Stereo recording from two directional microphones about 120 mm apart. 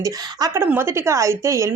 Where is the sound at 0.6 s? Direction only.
20° right (ahead or behind).